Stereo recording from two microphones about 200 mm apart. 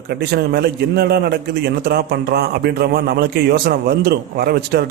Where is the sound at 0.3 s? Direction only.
55° right (ahead or behind).